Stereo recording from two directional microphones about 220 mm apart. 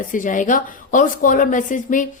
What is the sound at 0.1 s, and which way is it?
A woman's voice, 35° left (ahead or behind).